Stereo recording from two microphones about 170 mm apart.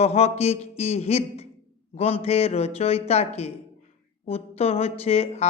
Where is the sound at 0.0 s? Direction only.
40° left (ahead or behind).